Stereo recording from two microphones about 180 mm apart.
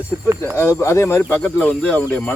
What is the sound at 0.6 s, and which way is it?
Speech, 15° left (ahead or behind).